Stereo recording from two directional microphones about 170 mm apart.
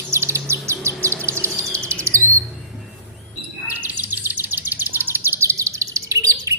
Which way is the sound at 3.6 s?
10° right (ahead or behind).